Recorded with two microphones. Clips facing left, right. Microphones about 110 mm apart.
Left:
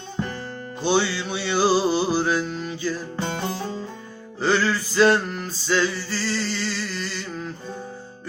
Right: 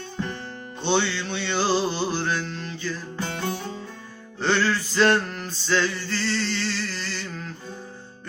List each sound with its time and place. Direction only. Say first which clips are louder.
0.8 s music: left 2 dB; 10° left (ahead or behind)
3.2 s music: left 2 dB; 30° left (ahead or behind)
4.4 s male singing: left 1 dB; centre (ahead or behind)